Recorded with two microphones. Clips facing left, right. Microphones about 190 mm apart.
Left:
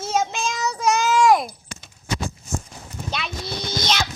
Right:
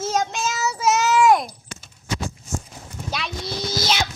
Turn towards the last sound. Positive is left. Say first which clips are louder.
# right 1 dB
turn(degrees=-5)  # may be behind; listen again after turning